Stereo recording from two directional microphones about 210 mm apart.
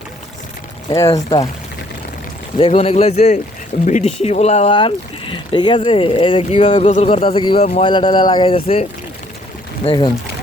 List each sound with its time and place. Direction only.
0.9 s speech: 15° left (ahead or behind)
2.6 s speech: 25° left (ahead or behind)